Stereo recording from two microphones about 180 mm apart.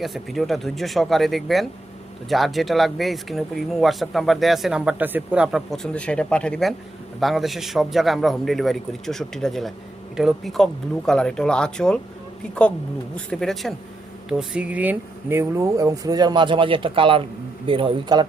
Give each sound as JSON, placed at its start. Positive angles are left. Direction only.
{"t": 0.0, "sound": "speech", "side_deg": 0}
{"t": 13.1, "sound": "speech", "side_deg": 0}